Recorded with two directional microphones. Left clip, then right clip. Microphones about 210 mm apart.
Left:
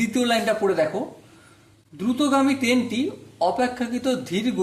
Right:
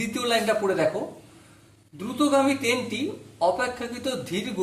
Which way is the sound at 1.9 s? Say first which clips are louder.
Left 1 dB; 50° left (ahead or behind).